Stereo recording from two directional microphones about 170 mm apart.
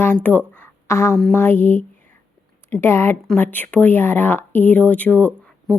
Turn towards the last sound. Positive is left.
turn(degrees=5)  # may be behind; listen again after turning